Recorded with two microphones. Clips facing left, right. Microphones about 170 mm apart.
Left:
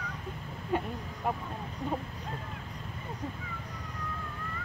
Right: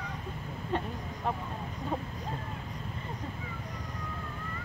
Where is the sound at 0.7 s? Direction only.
10° left (ahead or behind).